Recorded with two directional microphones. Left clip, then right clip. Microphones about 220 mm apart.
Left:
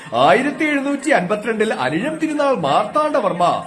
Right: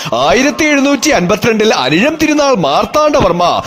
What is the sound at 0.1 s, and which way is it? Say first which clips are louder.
Speech: right 3 dB; 50° right (ahead or behind).